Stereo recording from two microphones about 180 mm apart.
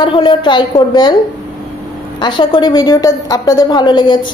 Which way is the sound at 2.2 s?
25° left (ahead or behind).